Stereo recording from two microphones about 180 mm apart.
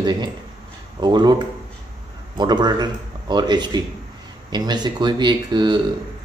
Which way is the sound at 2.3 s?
25° right (ahead or behind).